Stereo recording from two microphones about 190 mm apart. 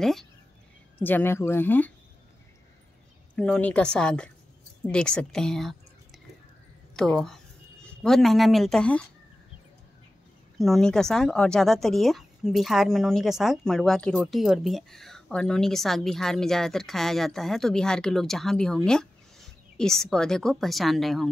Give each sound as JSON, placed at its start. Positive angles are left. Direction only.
{"t": 0.0, "sound": "speech", "side_deg": 0}
{"t": 3.3, "sound": "speech", "side_deg": 5}
{"t": 10.6, "sound": "speech", "side_deg": 0}